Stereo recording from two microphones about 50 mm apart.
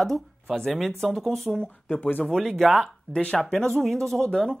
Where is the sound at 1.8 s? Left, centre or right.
Left.